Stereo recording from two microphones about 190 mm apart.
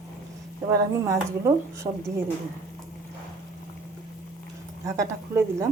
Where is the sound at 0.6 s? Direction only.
15° right (ahead or behind).